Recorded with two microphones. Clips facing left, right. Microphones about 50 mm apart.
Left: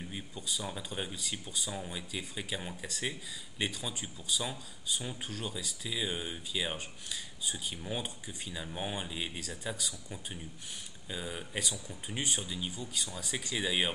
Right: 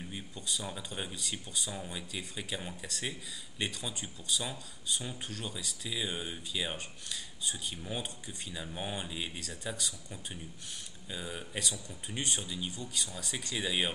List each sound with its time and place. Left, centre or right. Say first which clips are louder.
0.1 s speech: right 1 dB; centre